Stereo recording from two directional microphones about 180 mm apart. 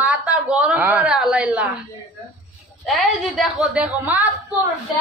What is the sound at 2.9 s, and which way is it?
A woman's voice, centre (ahead or behind).